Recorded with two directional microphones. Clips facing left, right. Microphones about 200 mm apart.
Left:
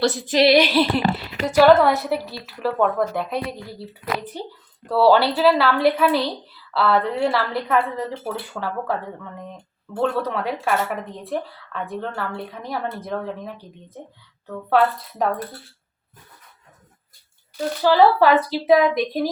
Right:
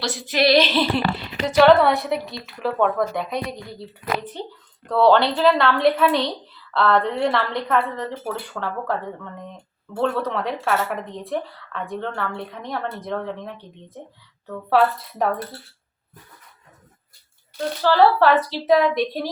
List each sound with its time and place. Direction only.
0.3 s speech: 25° left (ahead or behind); by 15.3 s centre (ahead or behind)
17.8 s speech: 10° left (ahead or behind)